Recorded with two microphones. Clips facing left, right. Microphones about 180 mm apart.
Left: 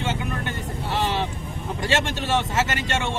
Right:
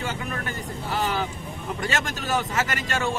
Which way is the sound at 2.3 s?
25° left (ahead or behind).